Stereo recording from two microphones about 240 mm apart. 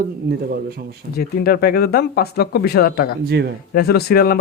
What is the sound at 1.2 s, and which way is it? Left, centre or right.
Speech, left.